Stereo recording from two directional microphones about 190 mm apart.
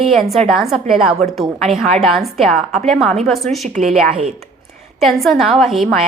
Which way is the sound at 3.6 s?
40° right (ahead or behind).